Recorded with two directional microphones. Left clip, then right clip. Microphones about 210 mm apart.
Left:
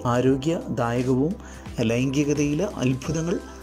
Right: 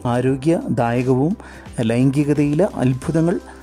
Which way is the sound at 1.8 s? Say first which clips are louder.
Right 4 dB; 55° right (ahead or behind).